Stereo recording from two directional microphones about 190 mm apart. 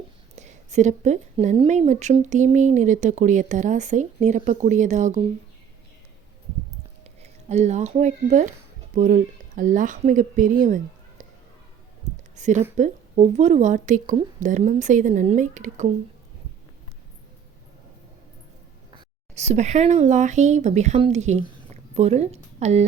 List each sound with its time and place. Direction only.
0.3 s speech: 40° right (ahead or behind)
7.0 s speech: 35° right (ahead or behind)
12.1 s a sound: 40° right (ahead or behind)
12.7 s speech: 40° right (ahead or behind)
19.3 s a woman's voice: 35° right (ahead or behind)